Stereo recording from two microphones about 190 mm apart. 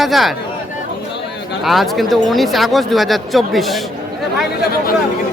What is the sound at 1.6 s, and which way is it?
Speech, centre (ahead or behind).